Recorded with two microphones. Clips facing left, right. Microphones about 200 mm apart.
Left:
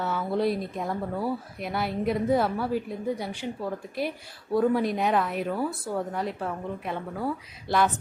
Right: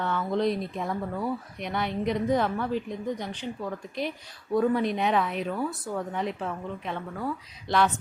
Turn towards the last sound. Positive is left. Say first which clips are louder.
# even
turn(degrees=5)  # may be behind; listen again after turning